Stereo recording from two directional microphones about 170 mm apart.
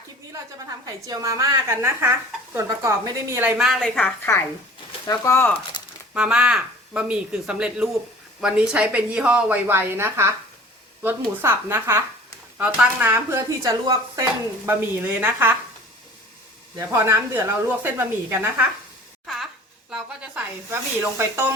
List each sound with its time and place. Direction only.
1.0 s speech: 20° right (ahead or behind)
3.6 s speech: centre (ahead or behind)
5.0 s speech: 15° left (ahead or behind)
6.1 s speech: 5° right (ahead or behind)
16.7 s speech: 20° right (ahead or behind)
19.2 s a sound: centre (ahead or behind)
19.9 s speech: 10° right (ahead or behind)